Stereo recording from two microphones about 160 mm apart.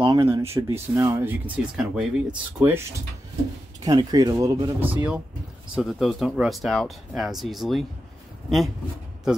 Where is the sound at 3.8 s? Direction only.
25° right (ahead or behind).